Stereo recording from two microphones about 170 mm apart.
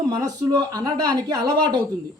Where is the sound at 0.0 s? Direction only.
25° right (ahead or behind).